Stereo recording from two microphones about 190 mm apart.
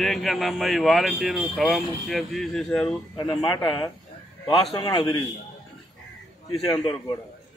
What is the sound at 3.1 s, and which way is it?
Speech, 25° left (ahead or behind).